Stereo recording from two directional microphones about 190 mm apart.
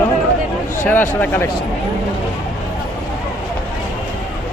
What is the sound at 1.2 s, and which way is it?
Speech, 10° left (ahead or behind).